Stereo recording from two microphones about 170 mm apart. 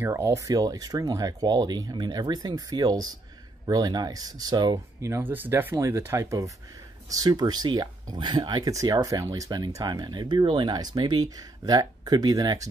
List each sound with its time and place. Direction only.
0.0 s speech: 15° right (ahead or behind)